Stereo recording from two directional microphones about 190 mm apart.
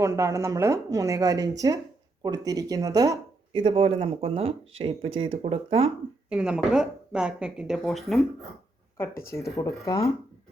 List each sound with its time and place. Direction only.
0.0 s speech: 15° right (ahead or behind); by 5.9 s 30° right (ahead or behind)
6.3 s speech: 5° right (ahead or behind)
9.3 s speech: 15° left (ahead or behind)